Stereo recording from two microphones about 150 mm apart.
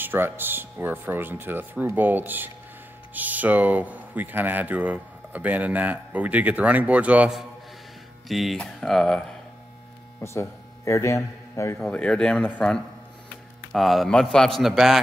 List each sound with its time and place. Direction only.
0.0 s a man's voice: 15° right (ahead or behind); by 9.2 s 5° left (ahead or behind)
10.2 s a man's voice: 20° left (ahead or behind)
11.8 s a man's voice: 5° left (ahead or behind)